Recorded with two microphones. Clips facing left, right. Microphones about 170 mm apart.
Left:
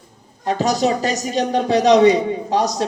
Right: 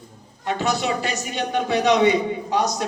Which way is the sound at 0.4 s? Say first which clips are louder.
Left 5 dB; 35° left (ahead or behind).